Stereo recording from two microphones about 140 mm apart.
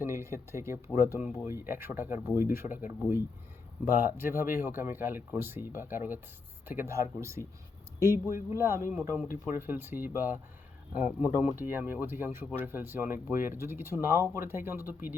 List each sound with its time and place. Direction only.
0.0 s speech: 20° right (ahead or behind)